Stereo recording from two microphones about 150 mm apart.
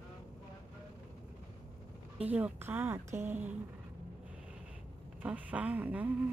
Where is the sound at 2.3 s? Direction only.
10° right (ahead or behind).